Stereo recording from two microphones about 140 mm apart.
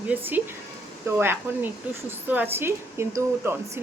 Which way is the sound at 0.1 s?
10° right (ahead or behind).